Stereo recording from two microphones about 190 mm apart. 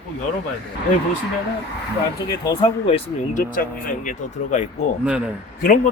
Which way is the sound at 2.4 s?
20° left (ahead or behind).